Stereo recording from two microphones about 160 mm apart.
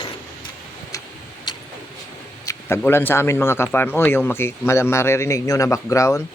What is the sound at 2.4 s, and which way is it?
Speech, 20° left (ahead or behind).